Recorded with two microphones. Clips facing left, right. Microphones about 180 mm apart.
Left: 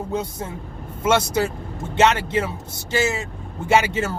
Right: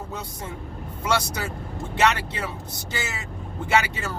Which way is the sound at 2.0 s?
25° left (ahead or behind).